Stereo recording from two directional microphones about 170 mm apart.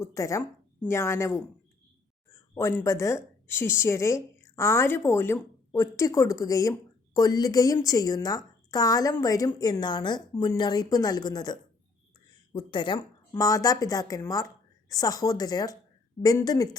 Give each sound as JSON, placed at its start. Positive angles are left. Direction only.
{"t": 0.0, "sound": "a woman's voice", "side_deg": 20}
{"t": 2.6, "sound": "a woman's voice", "side_deg": 20}